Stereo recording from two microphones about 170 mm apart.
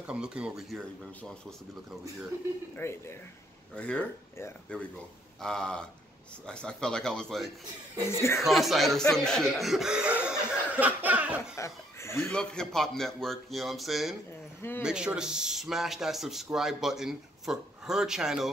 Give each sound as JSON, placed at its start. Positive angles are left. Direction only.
{"t": 0.0, "sound": "speech", "side_deg": -5}
{"t": 2.7, "sound": "speech", "side_deg": 15}
{"t": 8.1, "sound": "speech", "side_deg": 15}
{"t": 8.4, "sound": "speech", "side_deg": 0}
{"t": 11.5, "sound": "speech", "side_deg": 15}
{"t": 12.3, "sound": "speech", "side_deg": 5}